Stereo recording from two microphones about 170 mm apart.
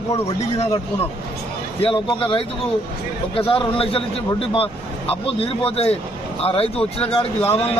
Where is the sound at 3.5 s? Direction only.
30° left (ahead or behind).